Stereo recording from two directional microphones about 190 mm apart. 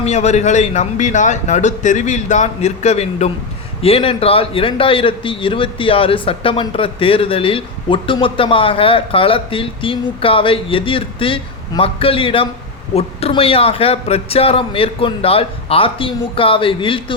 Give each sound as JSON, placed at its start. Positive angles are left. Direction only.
{"t": 0.0, "sound": "a man's voice", "side_deg": 35}